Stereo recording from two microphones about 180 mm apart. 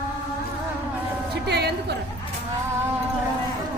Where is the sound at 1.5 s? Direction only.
65° right (ahead or behind).